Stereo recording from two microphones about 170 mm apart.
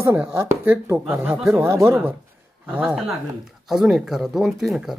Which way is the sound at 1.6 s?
15° right (ahead or behind).